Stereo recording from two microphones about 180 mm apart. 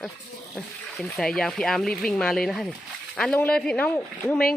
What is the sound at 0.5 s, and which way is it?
Speech, centre (ahead or behind).